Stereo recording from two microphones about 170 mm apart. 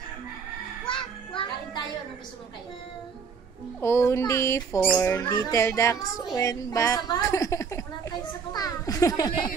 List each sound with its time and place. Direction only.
0.8 s music: 30° left (ahead or behind)
3.8 s a child's voice: 15° left (ahead or behind)